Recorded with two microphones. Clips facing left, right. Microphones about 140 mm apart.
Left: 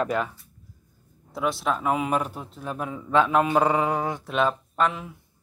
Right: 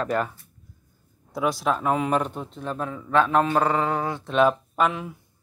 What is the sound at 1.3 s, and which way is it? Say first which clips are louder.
Speech: right 2 dB; centre (ahead or behind).